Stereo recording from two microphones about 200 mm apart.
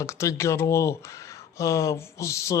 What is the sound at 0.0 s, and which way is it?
Speech, 15° left (ahead or behind).